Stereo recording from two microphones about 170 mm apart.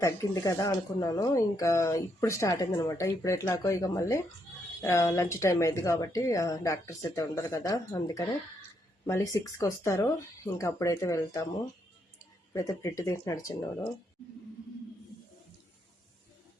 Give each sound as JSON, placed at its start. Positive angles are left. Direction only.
{"t": 0.0, "sound": "speech", "side_deg": 20}
{"t": 12.5, "sound": "speech", "side_deg": 20}